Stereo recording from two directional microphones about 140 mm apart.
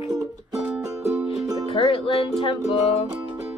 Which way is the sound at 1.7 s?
40° left (ahead or behind).